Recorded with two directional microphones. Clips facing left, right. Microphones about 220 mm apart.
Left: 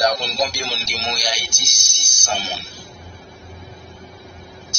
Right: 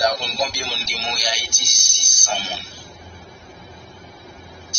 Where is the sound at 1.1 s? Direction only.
40° left (ahead or behind).